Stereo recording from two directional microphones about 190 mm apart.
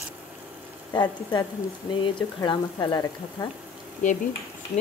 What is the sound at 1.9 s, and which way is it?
Speech, 25° left (ahead or behind).